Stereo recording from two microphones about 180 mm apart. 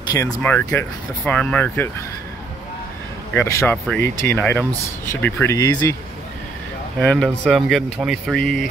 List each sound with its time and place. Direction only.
0.4 s speech: 10° left (ahead or behind)
3.3 s speech: 15° left (ahead or behind)
7.0 s speech: 5° left (ahead or behind)